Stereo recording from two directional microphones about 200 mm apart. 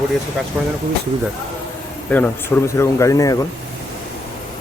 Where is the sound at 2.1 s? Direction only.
10° left (ahead or behind).